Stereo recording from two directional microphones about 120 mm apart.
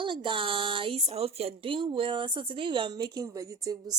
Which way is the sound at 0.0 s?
45° right (ahead or behind).